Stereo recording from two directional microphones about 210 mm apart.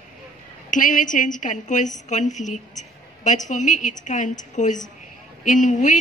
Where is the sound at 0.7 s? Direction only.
40° left (ahead or behind).